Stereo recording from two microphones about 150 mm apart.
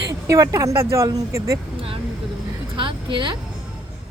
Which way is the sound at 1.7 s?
35° right (ahead or behind).